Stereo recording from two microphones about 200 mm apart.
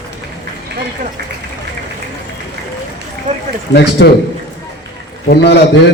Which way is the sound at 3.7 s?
60° left (ahead or behind).